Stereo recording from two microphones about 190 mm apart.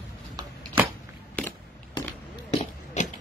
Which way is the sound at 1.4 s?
5° left (ahead or behind).